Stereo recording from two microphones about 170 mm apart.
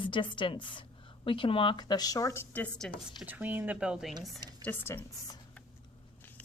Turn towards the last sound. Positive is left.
turn(degrees=10)  # may be behind; listen again after turning